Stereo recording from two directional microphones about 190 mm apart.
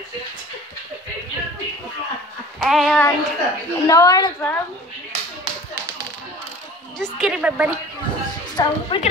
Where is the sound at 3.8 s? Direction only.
20° left (ahead or behind).